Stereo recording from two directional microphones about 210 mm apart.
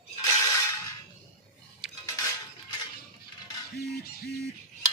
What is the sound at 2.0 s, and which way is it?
Music, 15° left (ahead or behind).